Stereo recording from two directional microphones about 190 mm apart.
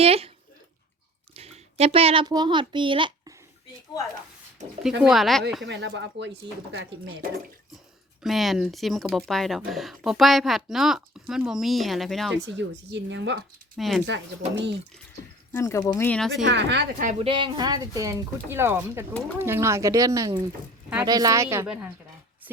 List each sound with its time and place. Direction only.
0.0 s speech: 30° right (ahead or behind)
1.3 s a child's voice: 35° right (ahead or behind)
4.8 s speech: centre (ahead or behind)
5.6 s speech: 65° right (ahead or behind)
8.2 s speech: centre (ahead or behind)
12.5 s speech: 70° right (ahead or behind)
13.7 s speech: centre (ahead or behind)
14.1 s speech: 70° right (ahead or behind)
15.5 s speech: 15° left (ahead or behind)
16.4 s speech: 75° right (ahead or behind)
17.0 s speech: 40° right (ahead or behind)
17.2 s speech: 25° right (ahead or behind); by 21.9 s 5° right (ahead or behind)